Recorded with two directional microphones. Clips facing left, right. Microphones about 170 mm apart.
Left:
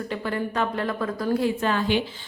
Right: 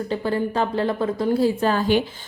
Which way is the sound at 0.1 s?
30° right (ahead or behind).